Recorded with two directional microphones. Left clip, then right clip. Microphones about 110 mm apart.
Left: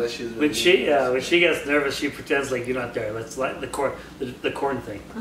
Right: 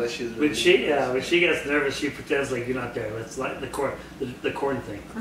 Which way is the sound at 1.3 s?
40° left (ahead or behind).